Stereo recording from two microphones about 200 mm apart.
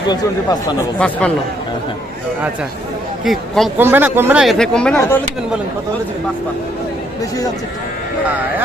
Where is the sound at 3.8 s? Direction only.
10° right (ahead or behind); by 5.6 s 5° left (ahead or behind).